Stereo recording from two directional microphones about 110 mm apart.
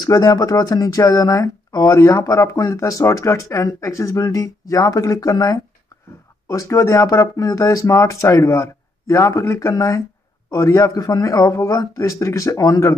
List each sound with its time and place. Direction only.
0.0 s speech: 35° left (ahead or behind)